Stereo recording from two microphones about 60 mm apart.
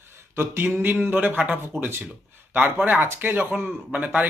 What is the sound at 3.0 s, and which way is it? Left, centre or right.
Speech, right.